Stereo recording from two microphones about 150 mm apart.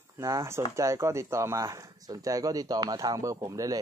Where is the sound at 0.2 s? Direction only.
20° right (ahead or behind).